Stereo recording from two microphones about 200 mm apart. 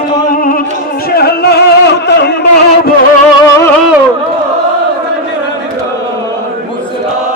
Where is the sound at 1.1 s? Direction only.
50° left (ahead or behind).